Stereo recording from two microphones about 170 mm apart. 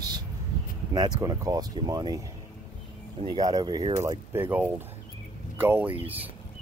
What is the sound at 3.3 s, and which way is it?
Speech, 25° right (ahead or behind).